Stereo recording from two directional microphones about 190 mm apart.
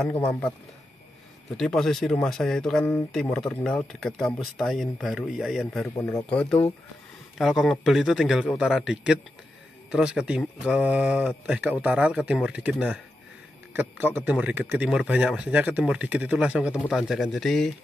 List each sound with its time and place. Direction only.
0.2 s speech: 5° left (ahead or behind)
1.6 s speech: centre (ahead or behind)
5.9 s speech: 20° left (ahead or behind)
6.3 s speech: 5° left (ahead or behind)